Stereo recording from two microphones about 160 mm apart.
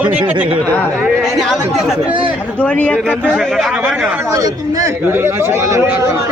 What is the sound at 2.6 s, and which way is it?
Speech, 10° left (ahead or behind).